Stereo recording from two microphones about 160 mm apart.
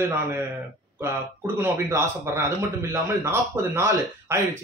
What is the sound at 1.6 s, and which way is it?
Speech, 15° right (ahead or behind).